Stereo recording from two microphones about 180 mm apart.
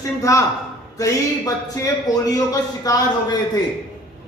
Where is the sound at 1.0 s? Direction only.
20° left (ahead or behind).